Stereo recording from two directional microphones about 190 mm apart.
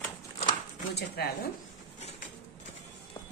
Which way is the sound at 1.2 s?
60° left (ahead or behind).